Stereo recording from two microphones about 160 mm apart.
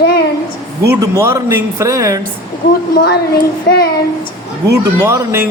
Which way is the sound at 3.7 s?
80° left.